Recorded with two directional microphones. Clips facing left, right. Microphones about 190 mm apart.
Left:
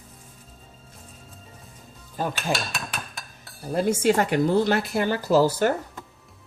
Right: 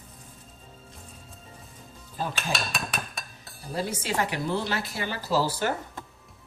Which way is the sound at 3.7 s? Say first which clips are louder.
Left 9 dB; 50° left (ahead or behind).